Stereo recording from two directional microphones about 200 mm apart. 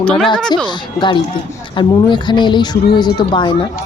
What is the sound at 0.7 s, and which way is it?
A man's voice, 25° left (ahead or behind).